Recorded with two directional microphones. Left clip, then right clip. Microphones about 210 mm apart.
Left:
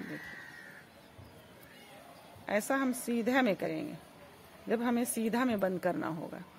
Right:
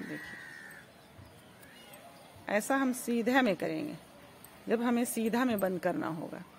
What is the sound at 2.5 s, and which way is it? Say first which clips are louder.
Speech: right 1 dB; 10° right (ahead or behind).